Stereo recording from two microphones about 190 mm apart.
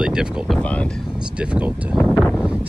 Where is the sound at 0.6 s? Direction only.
5° left (ahead or behind).